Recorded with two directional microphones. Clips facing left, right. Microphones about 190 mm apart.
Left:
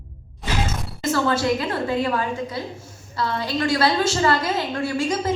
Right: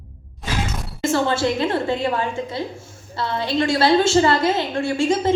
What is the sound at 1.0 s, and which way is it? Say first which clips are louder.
A woman's voice: right 1 dB; 25° right (ahead or behind).